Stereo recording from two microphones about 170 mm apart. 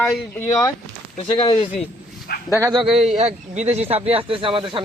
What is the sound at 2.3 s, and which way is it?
Dog, 65° left (ahead or behind).